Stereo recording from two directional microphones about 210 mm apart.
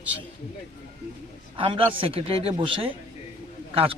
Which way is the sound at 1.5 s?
25° right (ahead or behind).